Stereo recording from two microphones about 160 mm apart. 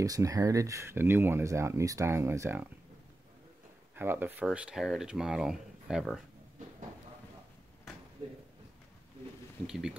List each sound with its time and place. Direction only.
0.0 s speech: 20° right (ahead or behind)
3.9 s speech: 15° right (ahead or behind)
9.7 s speech: 5° right (ahead or behind)